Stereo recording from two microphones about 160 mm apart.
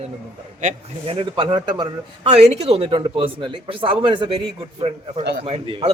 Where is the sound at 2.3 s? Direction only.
40° right (ahead or behind).